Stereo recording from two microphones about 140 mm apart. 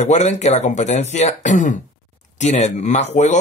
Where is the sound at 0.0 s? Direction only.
55° left (ahead or behind).